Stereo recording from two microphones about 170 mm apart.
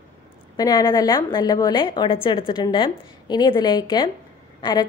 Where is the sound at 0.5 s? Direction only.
20° left (ahead or behind).